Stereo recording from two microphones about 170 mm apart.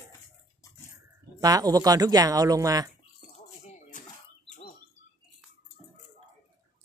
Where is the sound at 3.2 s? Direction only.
45° left (ahead or behind).